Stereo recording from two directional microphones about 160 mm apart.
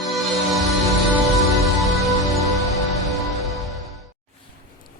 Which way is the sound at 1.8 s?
Centre (ahead or behind).